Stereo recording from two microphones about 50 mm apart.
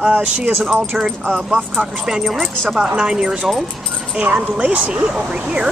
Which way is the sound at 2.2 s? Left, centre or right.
Centre.